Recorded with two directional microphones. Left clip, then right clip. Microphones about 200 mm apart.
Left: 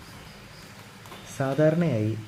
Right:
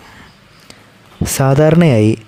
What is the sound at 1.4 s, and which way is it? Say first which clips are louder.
Speech: right 12 dB; 60° right (ahead or behind).